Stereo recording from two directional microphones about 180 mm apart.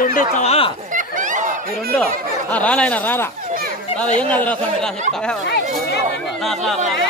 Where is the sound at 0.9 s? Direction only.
45° right (ahead or behind).